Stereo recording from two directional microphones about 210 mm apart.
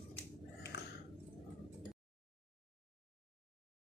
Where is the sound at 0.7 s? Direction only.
50° left (ahead or behind).